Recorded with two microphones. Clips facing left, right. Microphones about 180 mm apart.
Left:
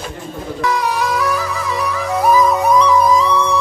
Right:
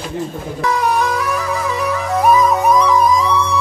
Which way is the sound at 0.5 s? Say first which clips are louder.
Right 2 dB; 35° right (ahead or behind).